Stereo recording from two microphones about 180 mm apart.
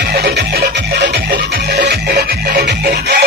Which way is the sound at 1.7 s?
65° right (ahead or behind).